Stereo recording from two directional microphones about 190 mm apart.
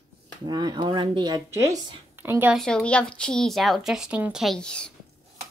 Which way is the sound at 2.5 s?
5° left (ahead or behind).